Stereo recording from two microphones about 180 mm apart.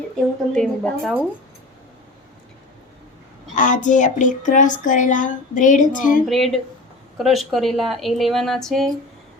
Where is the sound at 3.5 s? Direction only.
45° left (ahead or behind).